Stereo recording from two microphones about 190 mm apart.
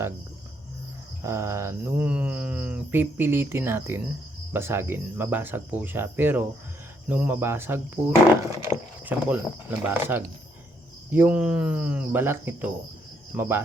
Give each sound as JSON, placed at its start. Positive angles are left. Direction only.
{"t": 1.2, "sound": "speech", "side_deg": -15}